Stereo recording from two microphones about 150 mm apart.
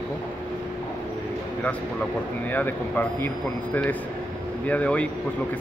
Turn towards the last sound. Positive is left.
turn(degrees=10)  # may be behind; listen again after turning